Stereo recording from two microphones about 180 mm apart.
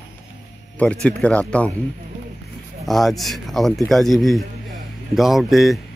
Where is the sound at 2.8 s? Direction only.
Centre (ahead or behind).